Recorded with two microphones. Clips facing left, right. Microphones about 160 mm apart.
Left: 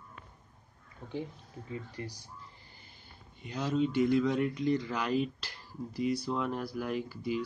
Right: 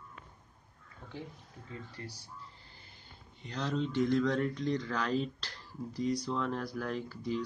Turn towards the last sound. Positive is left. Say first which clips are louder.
# left 2 dB
turn(degrees=10)  # may be behind; listen again after turning